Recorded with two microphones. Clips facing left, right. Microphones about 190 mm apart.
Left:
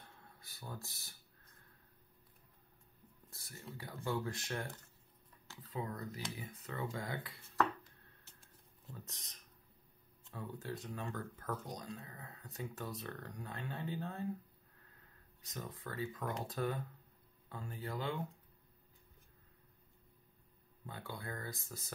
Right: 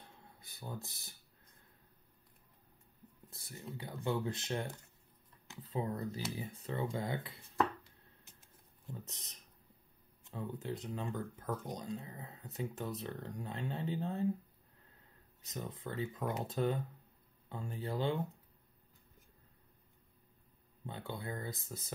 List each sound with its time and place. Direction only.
0.2 s a sound: 20° right (ahead or behind)
3.3 s speech: 20° right (ahead or behind)
8.9 s speech: 20° right (ahead or behind)
10.3 s speech: 20° right (ahead or behind)
15.4 s speech: 20° right (ahead or behind)
20.8 s speech: 25° right (ahead or behind)